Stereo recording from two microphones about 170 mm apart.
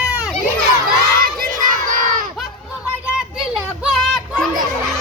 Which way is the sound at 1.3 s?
55° right (ahead or behind).